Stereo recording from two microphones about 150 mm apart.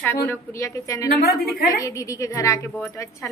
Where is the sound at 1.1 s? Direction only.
90° left.